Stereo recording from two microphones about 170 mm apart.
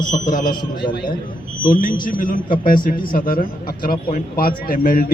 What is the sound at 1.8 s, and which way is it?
A man's voice, 55° left (ahead or behind).